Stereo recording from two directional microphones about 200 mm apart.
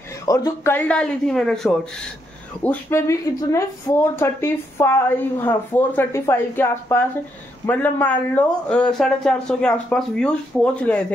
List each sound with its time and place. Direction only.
0.2 s a man's voice: 15° left (ahead or behind)